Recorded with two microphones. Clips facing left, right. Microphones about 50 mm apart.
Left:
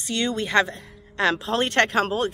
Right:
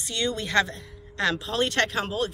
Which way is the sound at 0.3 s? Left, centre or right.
Centre.